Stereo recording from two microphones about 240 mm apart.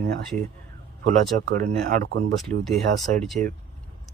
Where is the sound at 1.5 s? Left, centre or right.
Right.